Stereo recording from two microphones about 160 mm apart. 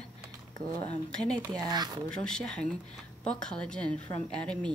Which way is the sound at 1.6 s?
25° right (ahead or behind).